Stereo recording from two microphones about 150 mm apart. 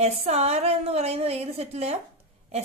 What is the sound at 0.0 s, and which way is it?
A woman's voice, 45° right (ahead or behind).